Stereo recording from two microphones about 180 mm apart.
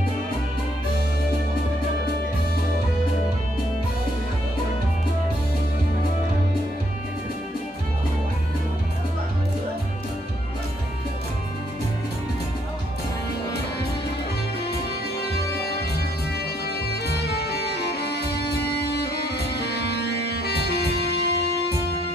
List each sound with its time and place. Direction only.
16.6 s music: 65° left (ahead or behind)